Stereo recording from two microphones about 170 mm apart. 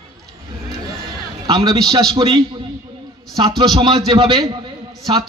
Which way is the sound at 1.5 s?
25° right (ahead or behind).